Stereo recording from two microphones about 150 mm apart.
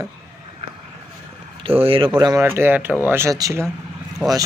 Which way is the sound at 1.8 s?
40° right (ahead or behind).